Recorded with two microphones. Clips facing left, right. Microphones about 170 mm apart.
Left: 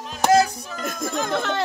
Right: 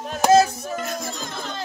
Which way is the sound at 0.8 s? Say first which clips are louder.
Left 4 dB; 50° left (ahead or behind).